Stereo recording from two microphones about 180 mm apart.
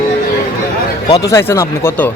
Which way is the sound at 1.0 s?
20° left (ahead or behind).